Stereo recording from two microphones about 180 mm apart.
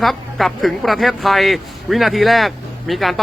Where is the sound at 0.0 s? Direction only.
Centre (ahead or behind).